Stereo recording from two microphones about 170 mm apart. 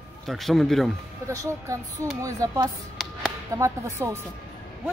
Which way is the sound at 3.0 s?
Centre (ahead or behind).